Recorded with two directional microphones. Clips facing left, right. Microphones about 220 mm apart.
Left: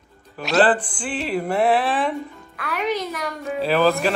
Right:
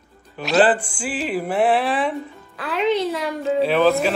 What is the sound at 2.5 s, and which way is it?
Speech, 25° right (ahead or behind).